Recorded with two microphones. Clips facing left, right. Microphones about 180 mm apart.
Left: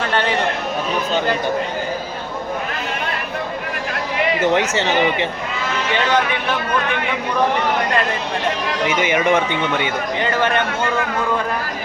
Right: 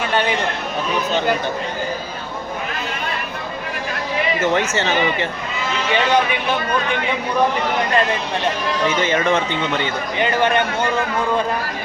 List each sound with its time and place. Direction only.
0.1 s chatter: 15° right (ahead or behind)
4.4 s speech: 15° left (ahead or behind)
8.9 s speech: 15° left (ahead or behind)
10.2 s a man's voice: 15° right (ahead or behind)